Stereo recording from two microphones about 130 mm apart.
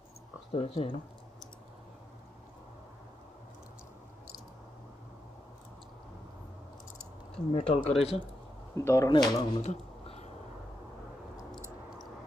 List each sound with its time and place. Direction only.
0.5 s speech: 50° left (ahead or behind)
7.3 s speech: 50° left (ahead or behind)
8.7 s speech: 25° left (ahead or behind)
9.1 s speech: 35° left (ahead or behind)
9.6 s a sound: 55° left (ahead or behind)